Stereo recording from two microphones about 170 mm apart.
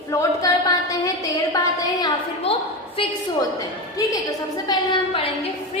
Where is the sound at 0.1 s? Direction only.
20° left (ahead or behind).